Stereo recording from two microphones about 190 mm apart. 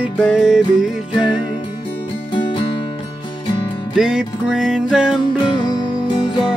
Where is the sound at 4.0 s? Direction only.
5° right (ahead or behind).